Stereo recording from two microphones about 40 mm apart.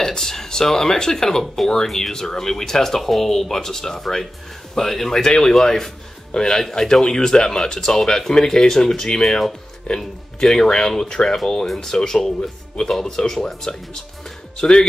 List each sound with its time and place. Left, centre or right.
0.0 s speech: centre